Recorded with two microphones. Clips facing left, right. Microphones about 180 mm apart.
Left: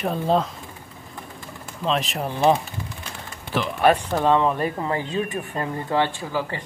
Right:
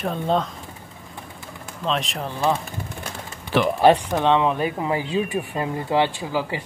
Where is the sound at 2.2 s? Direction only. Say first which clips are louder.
Left 4 dB; 15° left (ahead or behind).